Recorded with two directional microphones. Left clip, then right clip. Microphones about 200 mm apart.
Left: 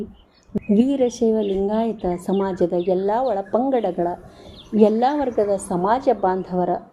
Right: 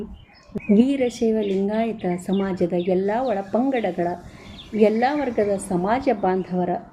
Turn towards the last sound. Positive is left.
turn(degrees=15)  # may be behind; listen again after turning